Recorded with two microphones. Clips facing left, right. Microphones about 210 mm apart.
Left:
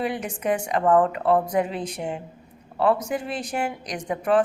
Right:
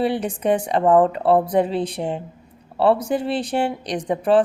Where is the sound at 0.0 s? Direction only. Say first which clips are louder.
Right 6 dB; 35° right (ahead or behind).